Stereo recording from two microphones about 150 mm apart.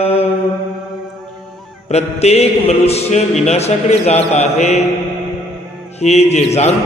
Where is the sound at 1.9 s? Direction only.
45° left (ahead or behind).